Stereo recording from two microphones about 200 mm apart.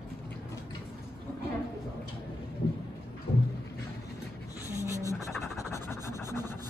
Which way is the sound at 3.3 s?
25° left (ahead or behind).